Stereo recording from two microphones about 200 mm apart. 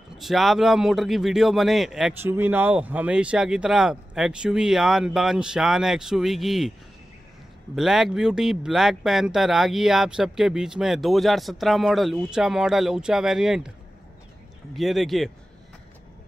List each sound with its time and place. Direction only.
0.2 s speech: centre (ahead or behind)
7.7 s speech: centre (ahead or behind)
14.8 s speech: centre (ahead or behind)